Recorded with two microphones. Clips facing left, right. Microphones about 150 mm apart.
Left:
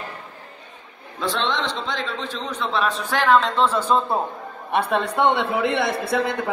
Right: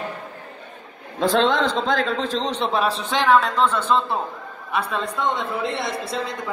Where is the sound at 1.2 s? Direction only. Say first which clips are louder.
Right 6 dB; 40° right (ahead or behind).